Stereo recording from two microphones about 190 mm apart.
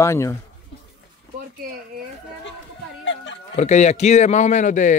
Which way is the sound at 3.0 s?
75° left (ahead or behind).